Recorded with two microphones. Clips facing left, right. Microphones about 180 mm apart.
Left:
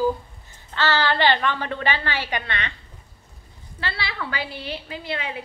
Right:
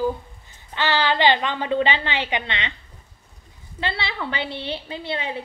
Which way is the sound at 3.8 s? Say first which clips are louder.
Right 3 dB; 25° right (ahead or behind).